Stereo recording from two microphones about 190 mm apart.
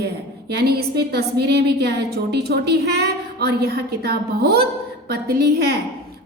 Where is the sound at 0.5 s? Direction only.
55° right (ahead or behind).